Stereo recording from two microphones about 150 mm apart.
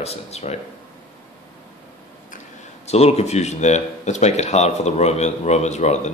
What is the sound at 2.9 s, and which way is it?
Speech, 45° left (ahead or behind).